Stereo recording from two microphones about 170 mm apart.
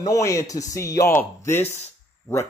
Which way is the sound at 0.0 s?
20° left (ahead or behind).